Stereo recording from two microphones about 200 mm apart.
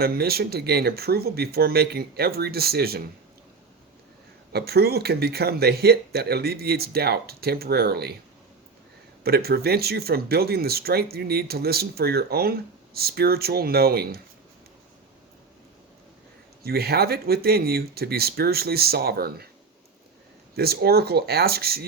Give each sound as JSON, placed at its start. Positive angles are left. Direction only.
{"t": 0.0, "sound": "speech", "side_deg": -50}
{"t": 4.5, "sound": "speech", "side_deg": -55}
{"t": 9.2, "sound": "speech", "side_deg": -50}
{"t": 16.6, "sound": "speech", "side_deg": -50}
{"t": 20.6, "sound": "speech", "side_deg": -50}